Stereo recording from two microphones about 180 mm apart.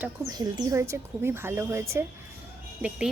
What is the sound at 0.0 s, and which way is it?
Speech, 20° right (ahead or behind).